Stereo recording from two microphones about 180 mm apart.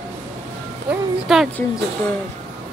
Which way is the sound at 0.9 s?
5° right (ahead or behind).